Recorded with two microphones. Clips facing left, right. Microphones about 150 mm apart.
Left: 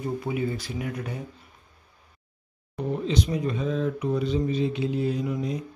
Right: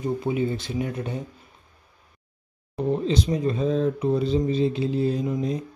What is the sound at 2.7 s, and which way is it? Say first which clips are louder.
Speech: right 3 dB; 30° right (ahead or behind).